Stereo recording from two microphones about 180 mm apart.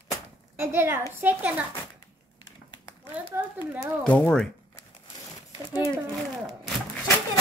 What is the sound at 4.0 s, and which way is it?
Speech, 5° left (ahead or behind).